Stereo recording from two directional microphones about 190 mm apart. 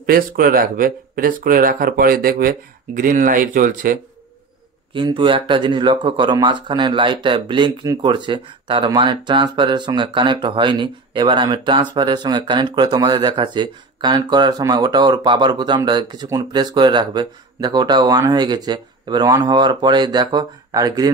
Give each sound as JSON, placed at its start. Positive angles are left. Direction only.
{"t": 0.0, "sound": "speech", "side_deg": -50}
{"t": 4.9, "sound": "speech", "side_deg": -25}